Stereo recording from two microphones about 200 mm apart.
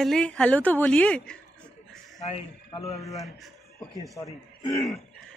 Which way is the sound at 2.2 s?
30° left (ahead or behind).